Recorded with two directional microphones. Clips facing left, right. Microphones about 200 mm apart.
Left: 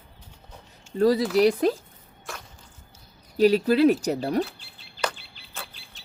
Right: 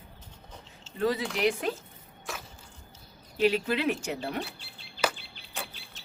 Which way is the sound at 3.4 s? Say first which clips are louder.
Left 8 dB; 40° left (ahead or behind).